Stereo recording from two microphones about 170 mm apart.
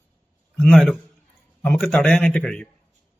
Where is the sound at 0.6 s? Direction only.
Centre (ahead or behind).